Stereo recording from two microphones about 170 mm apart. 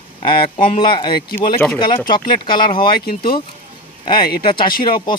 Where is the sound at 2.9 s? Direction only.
60° left (ahead or behind).